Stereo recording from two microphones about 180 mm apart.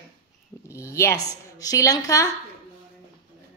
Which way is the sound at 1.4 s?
20° left (ahead or behind).